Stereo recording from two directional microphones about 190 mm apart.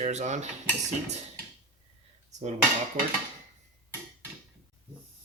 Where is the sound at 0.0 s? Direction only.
35° right (ahead or behind).